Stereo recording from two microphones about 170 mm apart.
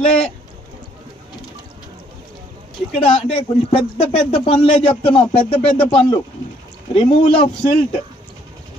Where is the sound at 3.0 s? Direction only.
35° left (ahead or behind).